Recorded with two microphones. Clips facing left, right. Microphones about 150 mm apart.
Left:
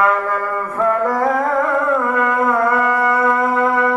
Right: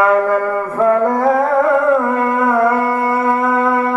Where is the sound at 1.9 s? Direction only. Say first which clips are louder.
Right 2 dB; 35° right (ahead or behind).